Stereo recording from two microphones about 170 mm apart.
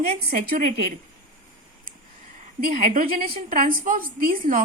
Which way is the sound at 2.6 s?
55° right (ahead or behind).